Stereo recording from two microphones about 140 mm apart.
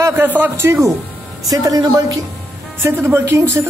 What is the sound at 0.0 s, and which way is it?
Speech, 15° right (ahead or behind).